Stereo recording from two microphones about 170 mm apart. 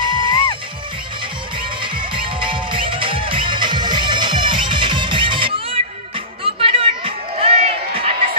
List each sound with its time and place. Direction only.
0.1 s music: 30° right (ahead or behind)
1.6 s music: 30° right (ahead or behind)